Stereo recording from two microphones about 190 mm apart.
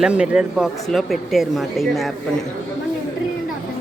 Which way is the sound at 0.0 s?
5° right (ahead or behind).